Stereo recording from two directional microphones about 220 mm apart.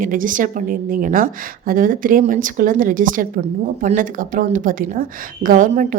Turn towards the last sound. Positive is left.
turn(degrees=-35)  # may be behind; listen again after turning